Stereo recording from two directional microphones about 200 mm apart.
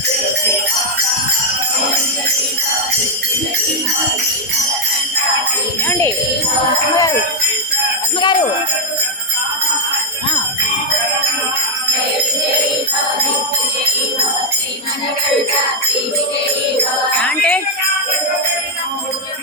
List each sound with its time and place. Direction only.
8.2 s jingle bell: 20° left (ahead or behind)
17.2 s jingle bell: 5° left (ahead or behind)